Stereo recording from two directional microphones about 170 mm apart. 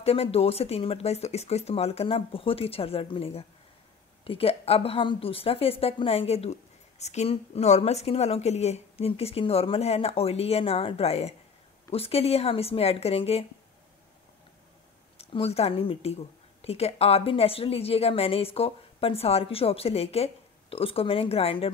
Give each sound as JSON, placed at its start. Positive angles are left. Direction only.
{"t": 0.0, "sound": "a woman's voice", "side_deg": 35}
{"t": 15.1, "sound": "a woman's voice", "side_deg": 35}